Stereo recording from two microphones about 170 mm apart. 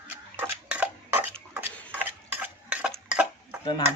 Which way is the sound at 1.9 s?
10° right (ahead or behind).